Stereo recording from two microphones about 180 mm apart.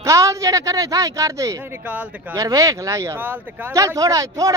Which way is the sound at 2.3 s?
20° right (ahead or behind).